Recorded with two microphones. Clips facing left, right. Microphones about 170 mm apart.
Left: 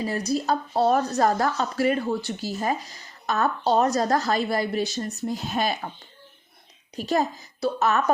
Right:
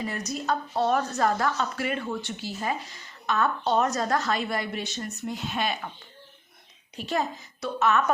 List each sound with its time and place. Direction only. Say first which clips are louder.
0.0 s a woman's voice: left 6 dB; 35° left (ahead or behind)
6.9 s a woman's voice: left 4 dB; 40° left (ahead or behind)